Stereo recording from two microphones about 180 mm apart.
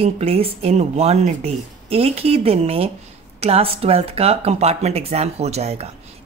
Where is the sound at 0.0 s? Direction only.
35° right (ahead or behind).